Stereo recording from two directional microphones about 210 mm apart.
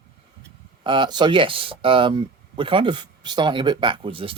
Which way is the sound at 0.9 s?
20° right (ahead or behind).